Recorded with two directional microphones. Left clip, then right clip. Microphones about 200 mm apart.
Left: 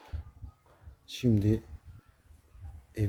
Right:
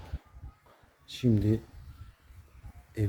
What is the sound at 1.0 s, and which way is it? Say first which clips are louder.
Speech: even; 30° left (ahead or behind).